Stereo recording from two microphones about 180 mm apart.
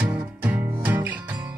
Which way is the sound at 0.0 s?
10° right (ahead or behind).